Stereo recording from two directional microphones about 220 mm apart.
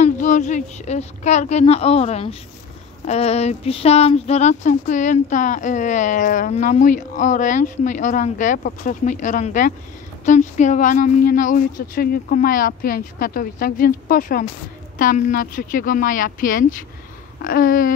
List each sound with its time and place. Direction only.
0.0 s speech: 35° left (ahead or behind)